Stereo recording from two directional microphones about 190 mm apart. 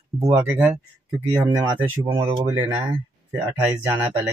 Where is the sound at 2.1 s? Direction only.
25° right (ahead or behind).